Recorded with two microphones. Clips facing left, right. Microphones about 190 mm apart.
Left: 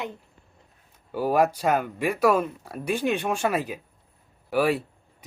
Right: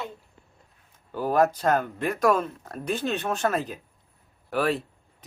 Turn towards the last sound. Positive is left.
turn(degrees=10)  # may be behind; listen again after turning